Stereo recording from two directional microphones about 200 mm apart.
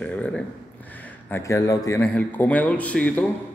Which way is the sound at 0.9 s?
10° left (ahead or behind).